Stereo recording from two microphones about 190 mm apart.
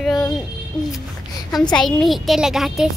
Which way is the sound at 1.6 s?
5° left (ahead or behind).